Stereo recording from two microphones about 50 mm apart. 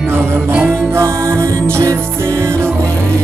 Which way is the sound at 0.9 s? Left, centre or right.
Right.